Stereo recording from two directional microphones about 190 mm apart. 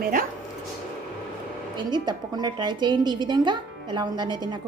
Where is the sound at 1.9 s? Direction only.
20° right (ahead or behind).